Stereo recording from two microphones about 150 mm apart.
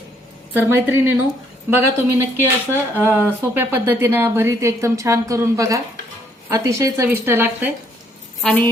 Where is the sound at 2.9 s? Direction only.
10° right (ahead or behind).